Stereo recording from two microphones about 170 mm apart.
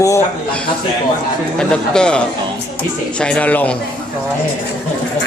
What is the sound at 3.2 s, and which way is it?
Speech, 10° left (ahead or behind).